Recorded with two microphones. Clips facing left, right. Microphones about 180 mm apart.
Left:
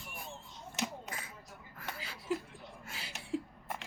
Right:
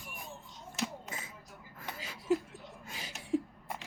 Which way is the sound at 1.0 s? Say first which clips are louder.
Even; 20° right (ahead or behind).